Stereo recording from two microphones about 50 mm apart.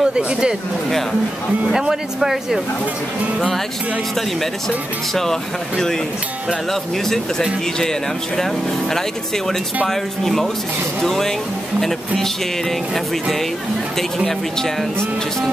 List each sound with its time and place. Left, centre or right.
0.0 s speech: centre
1.7 s speech: centre
9.8 s speech: centre
13.9 s speech: centre